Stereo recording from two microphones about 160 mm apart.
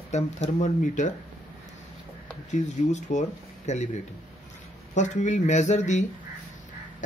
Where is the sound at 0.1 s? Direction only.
50° left (ahead or behind).